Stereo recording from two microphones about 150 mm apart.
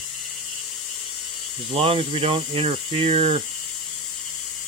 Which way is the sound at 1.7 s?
40° right (ahead or behind).